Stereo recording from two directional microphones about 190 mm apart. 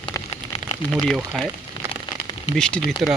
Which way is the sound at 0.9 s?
Centre (ahead or behind).